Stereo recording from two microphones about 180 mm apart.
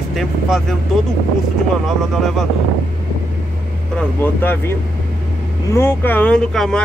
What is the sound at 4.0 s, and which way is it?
Speech, 10° left (ahead or behind).